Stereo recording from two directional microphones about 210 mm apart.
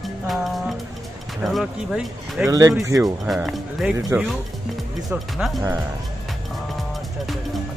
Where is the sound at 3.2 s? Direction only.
Centre (ahead or behind).